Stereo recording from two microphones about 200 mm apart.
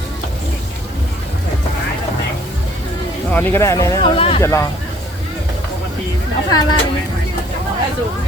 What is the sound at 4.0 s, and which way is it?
Speech, 25° left (ahead or behind).